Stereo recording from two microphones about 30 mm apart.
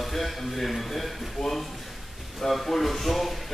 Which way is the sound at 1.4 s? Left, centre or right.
Left.